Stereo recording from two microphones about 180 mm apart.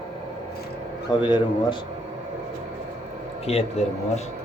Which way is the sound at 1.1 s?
25° left (ahead or behind).